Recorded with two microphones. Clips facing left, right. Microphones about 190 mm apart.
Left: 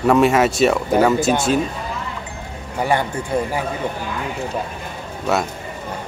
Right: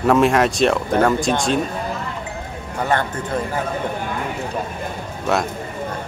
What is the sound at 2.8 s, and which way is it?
Speech, 10° left (ahead or behind).